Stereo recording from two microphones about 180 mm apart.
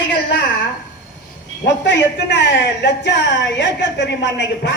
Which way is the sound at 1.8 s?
80° left.